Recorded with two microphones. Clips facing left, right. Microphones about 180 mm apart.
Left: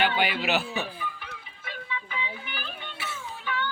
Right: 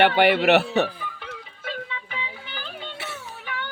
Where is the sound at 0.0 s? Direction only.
65° right (ahead or behind).